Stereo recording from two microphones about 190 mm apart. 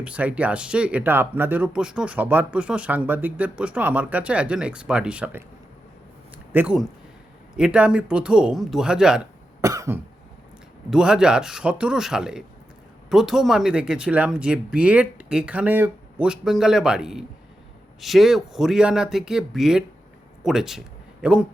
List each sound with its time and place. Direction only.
0.0 s speech: 5° right (ahead or behind)
6.5 s speech: 10° right (ahead or behind)
9.6 s cough: 15° right (ahead or behind)
10.9 s speech: 5° right (ahead or behind)